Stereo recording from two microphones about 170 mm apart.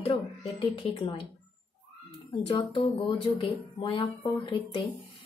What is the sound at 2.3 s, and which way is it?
Speech, 30° left (ahead or behind).